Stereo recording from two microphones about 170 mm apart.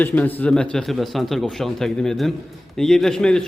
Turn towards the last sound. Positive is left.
turn(degrees=5)  # may be behind; listen again after turning